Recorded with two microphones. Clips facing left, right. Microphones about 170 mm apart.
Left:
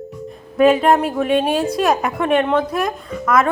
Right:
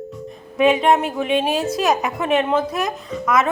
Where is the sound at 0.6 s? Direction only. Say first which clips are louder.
Left 2 dB; centre (ahead or behind).